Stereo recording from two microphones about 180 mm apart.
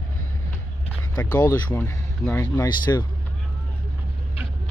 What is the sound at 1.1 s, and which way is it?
Speech, 20° left (ahead or behind).